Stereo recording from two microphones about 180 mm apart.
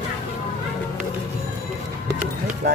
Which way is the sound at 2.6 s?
65° right (ahead or behind).